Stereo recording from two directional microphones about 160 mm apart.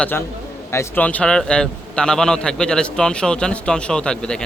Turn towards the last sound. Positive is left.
turn(degrees=5)  # may be behind; listen again after turning